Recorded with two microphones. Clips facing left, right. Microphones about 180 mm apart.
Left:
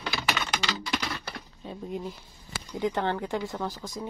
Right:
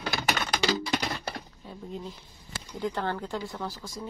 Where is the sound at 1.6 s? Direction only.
20° left (ahead or behind).